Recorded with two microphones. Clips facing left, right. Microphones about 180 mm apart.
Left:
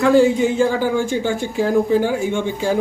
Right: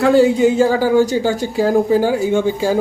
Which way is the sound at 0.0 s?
40° right (ahead or behind).